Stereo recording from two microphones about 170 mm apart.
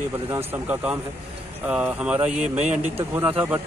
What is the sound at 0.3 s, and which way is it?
Speech, 10° right (ahead or behind).